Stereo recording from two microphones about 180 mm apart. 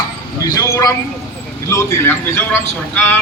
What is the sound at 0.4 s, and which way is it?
A man's voice, 20° left (ahead or behind).